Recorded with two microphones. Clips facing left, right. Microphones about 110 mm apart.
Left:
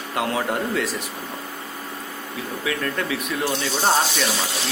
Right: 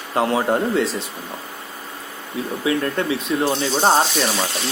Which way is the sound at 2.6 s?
30° right (ahead or behind).